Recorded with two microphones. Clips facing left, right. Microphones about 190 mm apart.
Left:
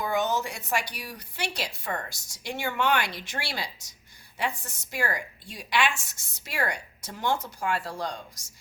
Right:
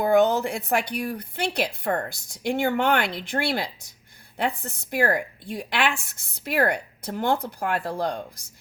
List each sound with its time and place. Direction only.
0.0 s a woman's voice: 60° right (ahead or behind)